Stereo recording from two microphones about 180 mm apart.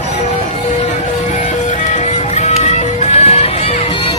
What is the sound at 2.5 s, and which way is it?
Music, 35° left (ahead or behind).